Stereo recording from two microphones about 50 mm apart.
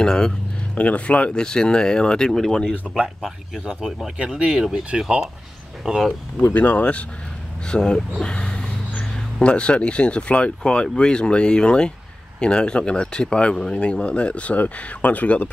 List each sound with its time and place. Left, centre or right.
0.0 s speech: centre
0.7 s speech: left
1.4 s speech: centre
3.2 s a man's voice: centre
4.2 s speech: right
5.9 s a man's voice: centre
6.4 s speech: left